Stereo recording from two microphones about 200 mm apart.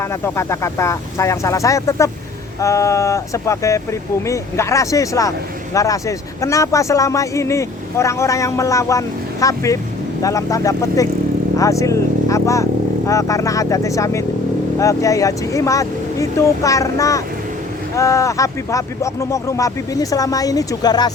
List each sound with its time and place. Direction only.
0.0 s speech: 15° left (ahead or behind)